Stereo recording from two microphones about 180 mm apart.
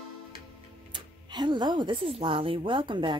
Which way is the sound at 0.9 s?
25° right (ahead or behind).